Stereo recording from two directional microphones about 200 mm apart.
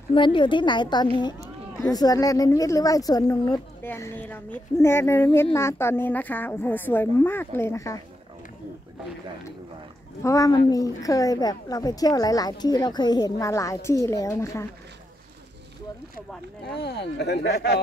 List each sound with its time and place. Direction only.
0.1 s a woman's voice: 25° left (ahead or behind)
10.2 s speech: 15° left (ahead or behind)
16.8 s speech: 55° left (ahead or behind)